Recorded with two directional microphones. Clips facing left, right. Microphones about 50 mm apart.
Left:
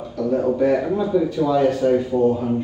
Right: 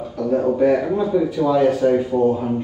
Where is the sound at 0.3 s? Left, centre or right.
Centre.